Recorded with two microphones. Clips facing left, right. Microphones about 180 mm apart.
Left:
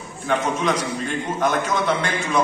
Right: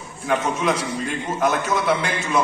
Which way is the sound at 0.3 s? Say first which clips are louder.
Even; 10° right (ahead or behind).